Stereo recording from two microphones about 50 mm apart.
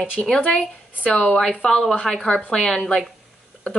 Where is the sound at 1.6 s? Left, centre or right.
Centre.